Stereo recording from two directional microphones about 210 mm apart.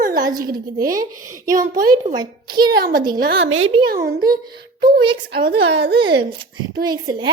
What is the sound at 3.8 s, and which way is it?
Speech, 45° right (ahead or behind).